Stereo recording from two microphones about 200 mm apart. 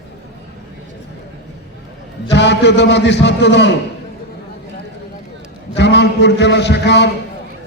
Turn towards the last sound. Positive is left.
turn(degrees=60)  # may be behind; listen again after turning